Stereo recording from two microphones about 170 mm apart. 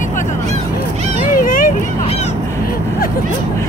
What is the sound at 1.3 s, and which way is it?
Vehicle, 55° left (ahead or behind).